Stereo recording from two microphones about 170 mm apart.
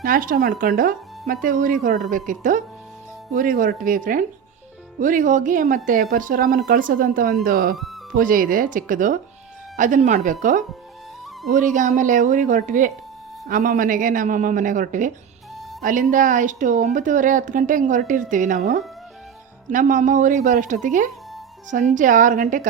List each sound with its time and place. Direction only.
0.0 s a woman's voice: 55° right (ahead or behind)